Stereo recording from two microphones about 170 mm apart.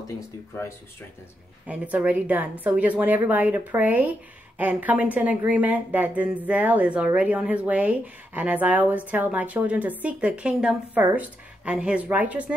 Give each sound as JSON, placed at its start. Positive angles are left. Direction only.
{"t": 1.7, "sound": "speech", "side_deg": -10}